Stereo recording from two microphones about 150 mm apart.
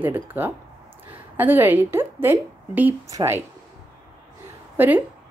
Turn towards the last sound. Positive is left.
turn(degrees=-15)  # may be behind; listen again after turning